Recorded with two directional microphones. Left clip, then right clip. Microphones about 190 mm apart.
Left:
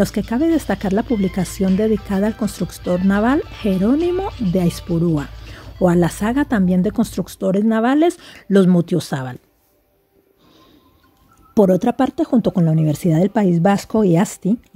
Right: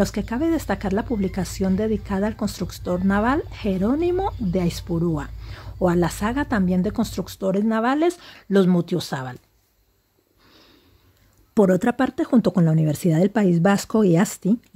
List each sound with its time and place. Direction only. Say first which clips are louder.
0.0 s speech: left 5 dB; 20° left (ahead or behind)
11.5 s speech: left 4 dB; 5° left (ahead or behind)